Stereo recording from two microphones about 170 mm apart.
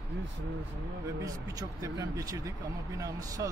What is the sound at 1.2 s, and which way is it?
Speech, 20° right (ahead or behind).